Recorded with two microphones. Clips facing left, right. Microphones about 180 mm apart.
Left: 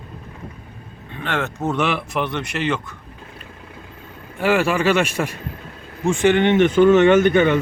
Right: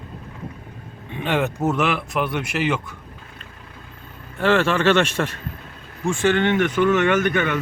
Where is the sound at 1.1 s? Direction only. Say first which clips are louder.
Right 3 dB; 15° right (ahead or behind).